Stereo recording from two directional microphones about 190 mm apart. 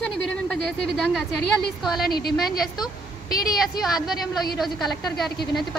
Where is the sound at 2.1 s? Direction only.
55° left (ahead or behind).